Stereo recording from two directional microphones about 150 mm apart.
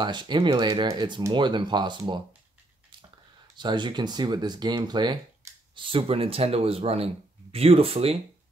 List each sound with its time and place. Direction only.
0.0 s speech: 30° right (ahead or behind)
3.5 s speech: 30° right (ahead or behind)